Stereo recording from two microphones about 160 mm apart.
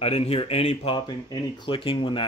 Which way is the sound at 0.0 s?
40° left (ahead or behind).